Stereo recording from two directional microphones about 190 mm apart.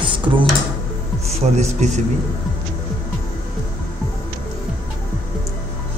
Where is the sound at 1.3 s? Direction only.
35° right (ahead or behind).